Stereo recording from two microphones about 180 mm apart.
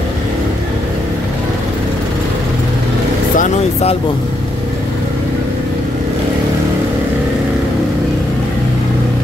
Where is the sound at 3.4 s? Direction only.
35° left (ahead or behind).